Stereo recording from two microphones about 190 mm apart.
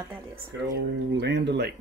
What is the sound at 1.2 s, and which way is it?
Speech, 65° right (ahead or behind).